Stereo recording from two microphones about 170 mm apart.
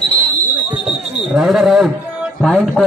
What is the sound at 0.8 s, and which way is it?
Speech, centre (ahead or behind).